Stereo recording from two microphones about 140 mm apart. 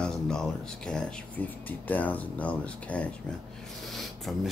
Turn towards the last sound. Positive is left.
turn(degrees=0)  # may be behind; listen again after turning